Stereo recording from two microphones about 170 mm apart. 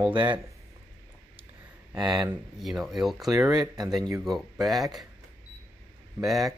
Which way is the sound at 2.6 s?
Centre (ahead or behind).